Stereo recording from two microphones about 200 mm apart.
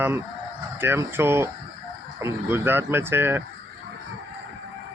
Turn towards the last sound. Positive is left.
turn(degrees=-10)  # may be behind; listen again after turning